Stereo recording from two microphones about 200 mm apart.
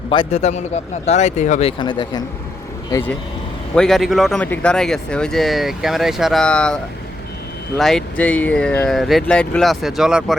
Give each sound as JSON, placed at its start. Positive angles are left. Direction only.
{"t": 0.1, "sound": "speech", "side_deg": 30}
{"t": 1.8, "sound": "a man's voice", "side_deg": 25}
{"t": 2.9, "sound": "speech", "side_deg": 10}
{"t": 7.8, "sound": "speech", "side_deg": 0}